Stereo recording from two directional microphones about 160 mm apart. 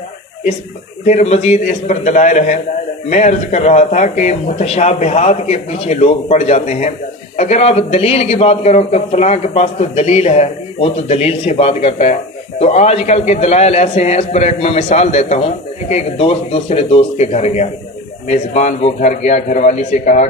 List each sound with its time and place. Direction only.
1.0 s speech: 45° left (ahead or behind)